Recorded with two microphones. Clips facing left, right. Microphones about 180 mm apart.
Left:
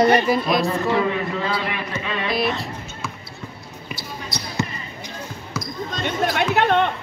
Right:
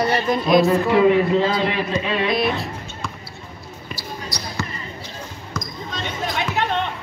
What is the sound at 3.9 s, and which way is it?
Basketball bounce, 20° left (ahead or behind).